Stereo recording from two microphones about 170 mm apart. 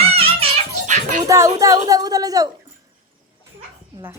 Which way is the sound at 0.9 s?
45° right (ahead or behind).